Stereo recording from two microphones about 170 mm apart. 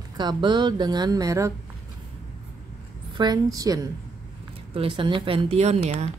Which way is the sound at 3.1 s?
25° right (ahead or behind).